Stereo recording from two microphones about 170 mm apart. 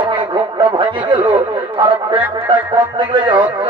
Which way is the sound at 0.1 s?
30° right (ahead or behind).